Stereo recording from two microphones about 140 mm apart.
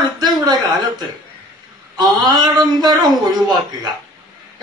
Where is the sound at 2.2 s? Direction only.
30° right (ahead or behind).